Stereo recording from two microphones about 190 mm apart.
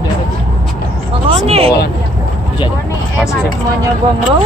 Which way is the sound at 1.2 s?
30° right (ahead or behind).